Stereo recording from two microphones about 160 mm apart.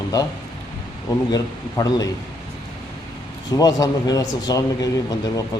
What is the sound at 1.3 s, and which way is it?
Speech, 25° left (ahead or behind).